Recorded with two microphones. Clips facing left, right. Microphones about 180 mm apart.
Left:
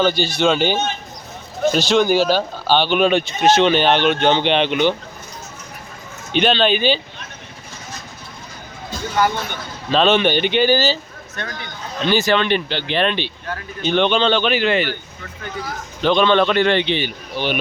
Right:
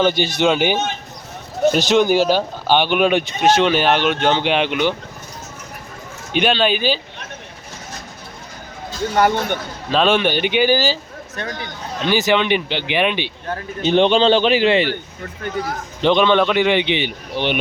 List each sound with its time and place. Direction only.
0.0 s speech: 20° right (ahead or behind)
6.3 s speech: 10° right (ahead or behind)
9.1 s speech: 60° right (ahead or behind)
9.9 s speech: 5° right (ahead or behind)
12.0 s speech: 15° right (ahead or behind)
13.5 s a man's voice: 30° right (ahead or behind)
16.0 s speech: 20° right (ahead or behind)